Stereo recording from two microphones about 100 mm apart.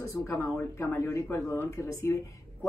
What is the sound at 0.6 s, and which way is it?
Speech, 25° left (ahead or behind).